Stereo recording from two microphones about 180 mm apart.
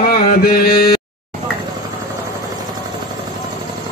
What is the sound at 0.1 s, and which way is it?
Mantra, 55° left (ahead or behind).